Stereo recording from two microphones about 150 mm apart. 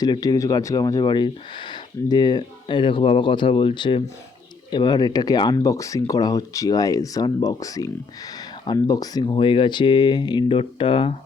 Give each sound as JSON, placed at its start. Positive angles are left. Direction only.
{"t": 0.0, "sound": "speech", "side_deg": 25}